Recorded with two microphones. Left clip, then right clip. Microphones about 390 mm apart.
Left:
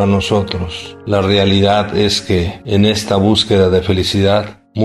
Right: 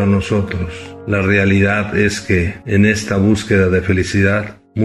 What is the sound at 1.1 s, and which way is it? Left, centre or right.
A man's voice, left.